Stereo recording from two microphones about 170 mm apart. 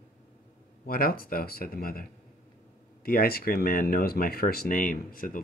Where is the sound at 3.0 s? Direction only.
60° left (ahead or behind).